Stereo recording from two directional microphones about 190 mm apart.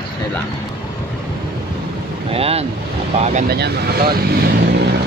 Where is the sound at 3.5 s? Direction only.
55° right (ahead or behind).